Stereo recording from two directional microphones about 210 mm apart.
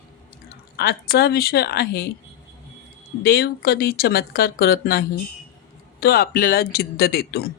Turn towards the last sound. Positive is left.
turn(degrees=45)  # may be behind; listen again after turning